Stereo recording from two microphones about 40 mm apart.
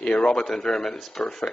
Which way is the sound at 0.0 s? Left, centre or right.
Left.